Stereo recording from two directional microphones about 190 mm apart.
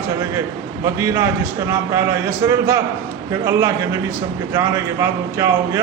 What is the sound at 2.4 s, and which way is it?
A man's voice, 15° right (ahead or behind).